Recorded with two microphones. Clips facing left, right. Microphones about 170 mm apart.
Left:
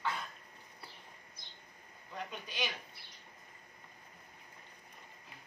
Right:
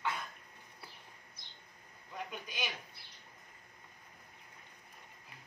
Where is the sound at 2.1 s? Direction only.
10° right (ahead or behind).